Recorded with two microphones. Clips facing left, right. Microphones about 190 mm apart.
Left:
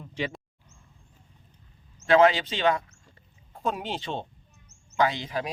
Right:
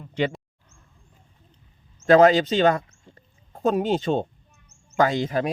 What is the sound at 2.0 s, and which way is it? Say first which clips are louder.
Speech: right 5 dB; 40° right (ahead or behind).